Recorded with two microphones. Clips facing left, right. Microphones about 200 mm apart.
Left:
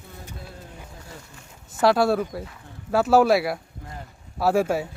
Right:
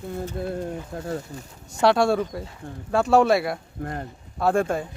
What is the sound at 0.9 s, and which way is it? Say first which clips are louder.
Speech: right 13 dB; 60° right (ahead or behind).